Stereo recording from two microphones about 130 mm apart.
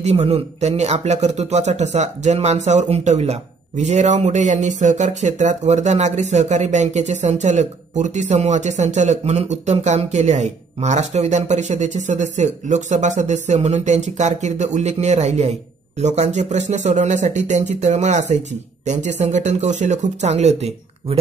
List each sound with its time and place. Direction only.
0.0 s speech: 55° right (ahead or behind)